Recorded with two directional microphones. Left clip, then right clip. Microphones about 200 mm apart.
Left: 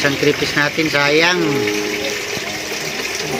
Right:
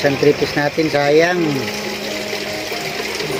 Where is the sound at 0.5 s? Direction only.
10° right (ahead or behind).